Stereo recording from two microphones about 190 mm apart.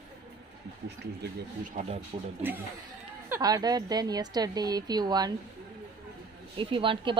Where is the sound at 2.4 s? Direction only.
10° right (ahead or behind).